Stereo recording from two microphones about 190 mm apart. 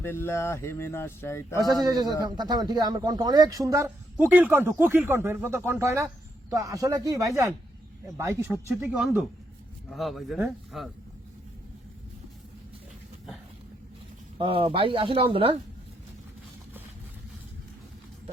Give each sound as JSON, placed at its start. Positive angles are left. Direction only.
{"t": 0.0, "sound": "speech", "side_deg": 10}
{"t": 1.5, "sound": "speech", "side_deg": -20}
{"t": 9.9, "sound": "speech", "side_deg": 0}
{"t": 14.3, "sound": "speech", "side_deg": -30}